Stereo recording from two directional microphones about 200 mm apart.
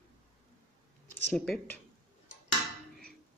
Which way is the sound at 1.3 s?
5° left (ahead or behind).